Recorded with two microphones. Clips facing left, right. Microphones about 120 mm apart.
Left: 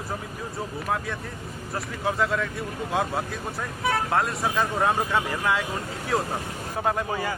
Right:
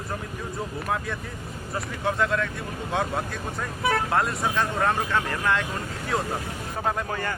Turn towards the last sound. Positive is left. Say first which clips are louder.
# left 1 dB
turn(degrees=5)  # may be behind; listen again after turning